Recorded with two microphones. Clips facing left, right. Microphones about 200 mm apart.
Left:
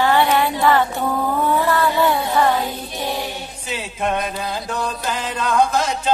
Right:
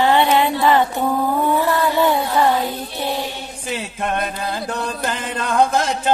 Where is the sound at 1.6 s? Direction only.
15° right (ahead or behind).